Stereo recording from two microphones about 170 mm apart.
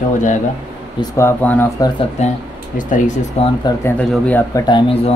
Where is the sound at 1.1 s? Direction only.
10° left (ahead or behind).